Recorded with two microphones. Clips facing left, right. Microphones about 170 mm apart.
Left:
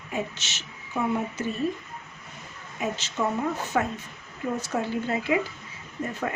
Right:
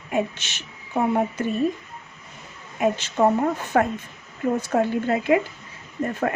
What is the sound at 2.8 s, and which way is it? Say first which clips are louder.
A woman's voice: right 8 dB; 55° right (ahead or behind).